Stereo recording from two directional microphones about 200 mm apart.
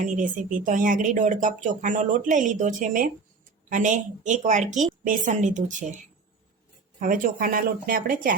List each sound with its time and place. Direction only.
0.0 s speech: 40° right (ahead or behind)
7.0 s speech: 40° right (ahead or behind)